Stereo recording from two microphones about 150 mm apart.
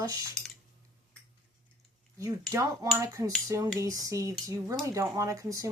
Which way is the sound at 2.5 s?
20° right (ahead or behind).